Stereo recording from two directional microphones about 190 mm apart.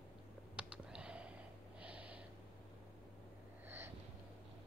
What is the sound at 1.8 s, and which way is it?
Snort, 5° right (ahead or behind).